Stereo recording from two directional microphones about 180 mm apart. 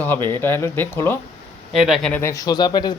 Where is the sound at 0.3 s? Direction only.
15° left (ahead or behind).